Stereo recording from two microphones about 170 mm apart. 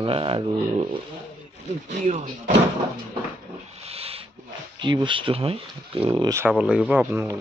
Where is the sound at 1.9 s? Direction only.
45° right (ahead or behind).